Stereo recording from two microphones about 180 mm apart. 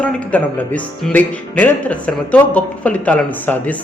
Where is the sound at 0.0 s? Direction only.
10° left (ahead or behind).